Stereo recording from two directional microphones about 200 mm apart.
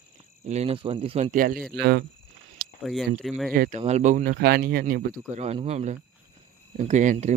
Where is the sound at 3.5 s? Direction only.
45° right (ahead or behind).